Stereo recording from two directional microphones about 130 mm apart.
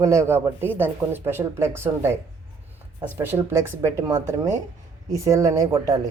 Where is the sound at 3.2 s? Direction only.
20° right (ahead or behind).